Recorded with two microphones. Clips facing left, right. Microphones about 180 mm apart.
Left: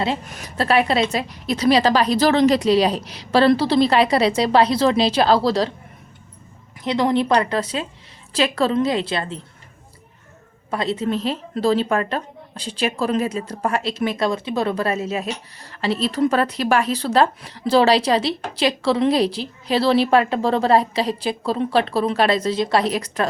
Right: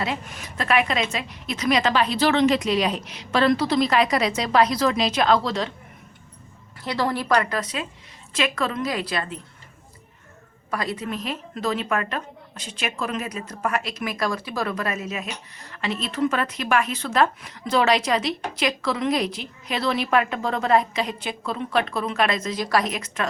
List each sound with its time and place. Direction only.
0.0 s speech: 35° left (ahead or behind)
6.8 s a woman's voice: 20° left (ahead or behind)
10.7 s speech: 25° left (ahead or behind)